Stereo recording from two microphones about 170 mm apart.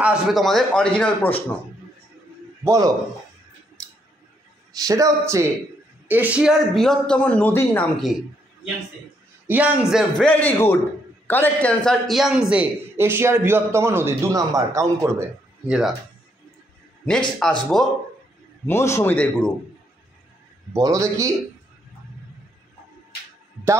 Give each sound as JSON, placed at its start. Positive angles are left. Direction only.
{"t": 0.0, "sound": "a man's voice", "side_deg": -5}
{"t": 2.6, "sound": "a man's voice", "side_deg": -20}
{"t": 4.7, "sound": "a man's voice", "side_deg": -20}
{"t": 9.5, "sound": "a man's voice", "side_deg": -10}
{"t": 10.2, "sound": "a man's voice", "side_deg": 10}
{"t": 17.4, "sound": "a man's voice", "side_deg": 0}
{"t": 18.7, "sound": "a man's voice", "side_deg": 15}
{"t": 20.7, "sound": "a man's voice", "side_deg": -20}